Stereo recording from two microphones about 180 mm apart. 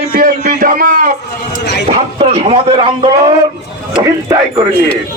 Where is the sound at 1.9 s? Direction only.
35° right (ahead or behind).